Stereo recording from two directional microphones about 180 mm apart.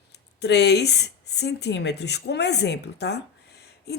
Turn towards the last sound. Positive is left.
turn(degrees=65)  # may be behind; listen again after turning